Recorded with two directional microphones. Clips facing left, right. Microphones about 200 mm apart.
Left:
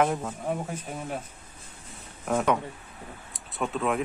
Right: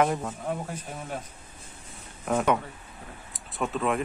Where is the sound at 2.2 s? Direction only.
Centre (ahead or behind).